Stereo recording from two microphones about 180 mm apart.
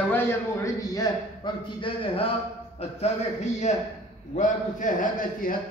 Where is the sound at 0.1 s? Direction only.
15° left (ahead or behind).